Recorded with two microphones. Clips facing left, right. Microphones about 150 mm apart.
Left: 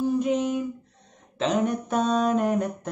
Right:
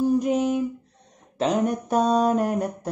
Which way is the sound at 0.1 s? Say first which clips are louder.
Right 2 dB; 40° right (ahead or behind).